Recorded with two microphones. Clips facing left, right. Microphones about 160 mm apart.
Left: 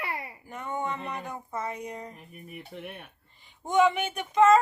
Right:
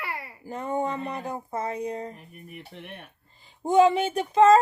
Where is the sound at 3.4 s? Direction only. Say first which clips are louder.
Right 4 dB; 30° right (ahead or behind).